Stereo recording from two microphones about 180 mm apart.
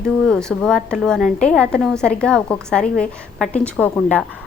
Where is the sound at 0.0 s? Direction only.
5° left (ahead or behind).